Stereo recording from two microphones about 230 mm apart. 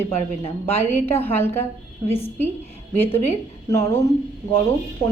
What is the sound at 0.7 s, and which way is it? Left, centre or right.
Speech, centre.